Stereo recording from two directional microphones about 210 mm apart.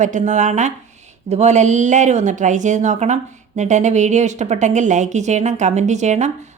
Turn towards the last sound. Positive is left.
turn(degrees=-35)  # may be behind; listen again after turning